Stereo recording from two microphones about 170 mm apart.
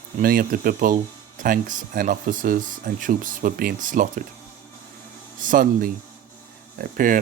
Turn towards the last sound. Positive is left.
turn(degrees=-55)  # may be behind; listen again after turning